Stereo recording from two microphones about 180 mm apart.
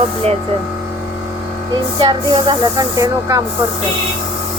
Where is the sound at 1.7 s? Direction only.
25° right (ahead or behind).